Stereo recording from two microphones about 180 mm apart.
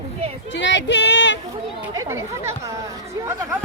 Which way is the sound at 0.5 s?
85° left.